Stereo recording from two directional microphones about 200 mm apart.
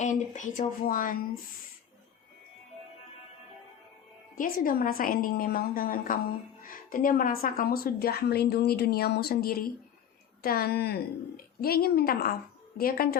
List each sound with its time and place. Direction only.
0.0 s speech: 35° left (ahead or behind)
4.4 s speech: 45° left (ahead or behind)